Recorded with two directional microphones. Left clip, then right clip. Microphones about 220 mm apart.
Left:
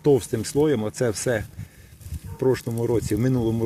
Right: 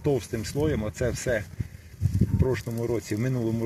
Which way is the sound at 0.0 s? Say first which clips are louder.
Left 7 dB; 40° left (ahead or behind).